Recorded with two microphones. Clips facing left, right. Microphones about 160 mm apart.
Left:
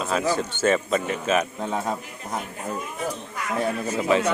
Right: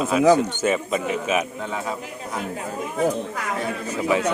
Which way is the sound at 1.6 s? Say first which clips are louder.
Left 1 dB; 35° left (ahead or behind).